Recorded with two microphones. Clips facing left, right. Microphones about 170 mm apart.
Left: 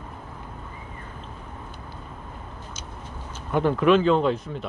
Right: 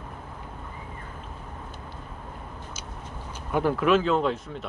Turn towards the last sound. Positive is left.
turn(degrees=0)  # may be behind; listen again after turning